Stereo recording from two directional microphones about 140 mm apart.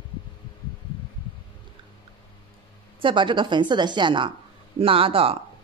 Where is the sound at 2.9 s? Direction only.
35° right (ahead or behind).